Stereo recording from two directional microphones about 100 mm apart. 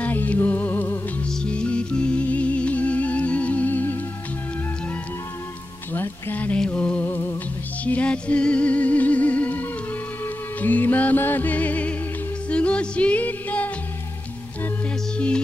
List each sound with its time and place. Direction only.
0.0 s music: 15° left (ahead or behind)
5.9 s a sound: 20° left (ahead or behind)
7.8 s music: 15° left (ahead or behind)
15.1 s music: 10° left (ahead or behind)